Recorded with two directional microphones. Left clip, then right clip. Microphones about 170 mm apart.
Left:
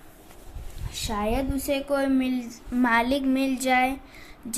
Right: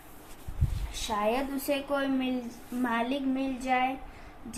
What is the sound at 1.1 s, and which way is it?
A woman's voice, 45° left (ahead or behind).